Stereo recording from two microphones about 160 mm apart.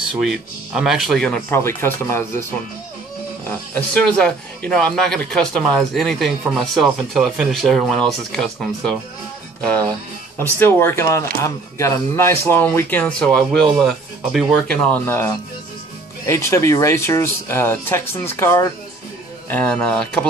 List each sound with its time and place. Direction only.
0.1 s speech: centre (ahead or behind)
1.5 s speech: 15° left (ahead or behind)
3.4 s speech: 10° left (ahead or behind)
9.6 s music: 10° left (ahead or behind)
10.6 s speech: 15° left (ahead or behind)